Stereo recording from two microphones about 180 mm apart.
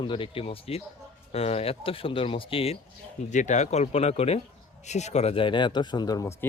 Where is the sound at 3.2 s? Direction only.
40° left (ahead or behind).